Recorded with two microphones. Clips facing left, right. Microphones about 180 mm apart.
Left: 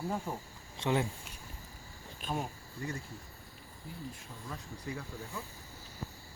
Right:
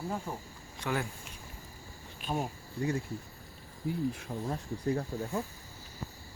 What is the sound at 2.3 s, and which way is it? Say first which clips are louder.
Speech: right 3 dB; 10° right (ahead or behind).